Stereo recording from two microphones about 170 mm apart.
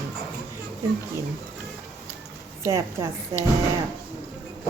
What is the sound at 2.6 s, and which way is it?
Speech, 15° right (ahead or behind).